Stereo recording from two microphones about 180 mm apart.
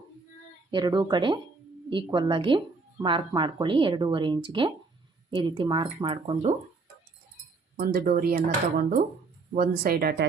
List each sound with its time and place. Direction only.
0.7 s speech: 25° right (ahead or behind)
7.8 s speech: 55° right (ahead or behind)